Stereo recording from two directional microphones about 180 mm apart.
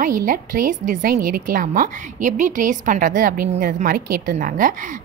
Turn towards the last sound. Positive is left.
turn(degrees=-50)  # may be behind; listen again after turning